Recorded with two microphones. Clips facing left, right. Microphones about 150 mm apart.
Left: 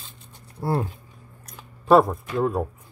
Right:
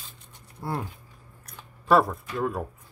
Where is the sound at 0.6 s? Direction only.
35° left (ahead or behind).